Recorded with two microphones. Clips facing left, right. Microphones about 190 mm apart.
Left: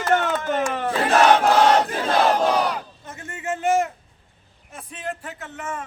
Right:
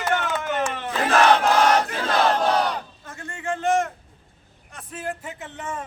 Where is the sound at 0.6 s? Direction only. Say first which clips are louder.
Left 3 dB; 40° left (ahead or behind).